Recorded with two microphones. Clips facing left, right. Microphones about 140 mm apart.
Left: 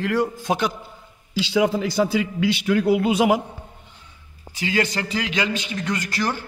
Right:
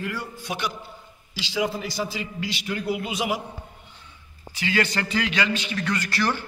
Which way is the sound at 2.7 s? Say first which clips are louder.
Left 10 dB; 90° left.